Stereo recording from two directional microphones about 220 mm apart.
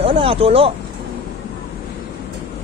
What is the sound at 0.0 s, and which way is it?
Speech, 25° right (ahead or behind).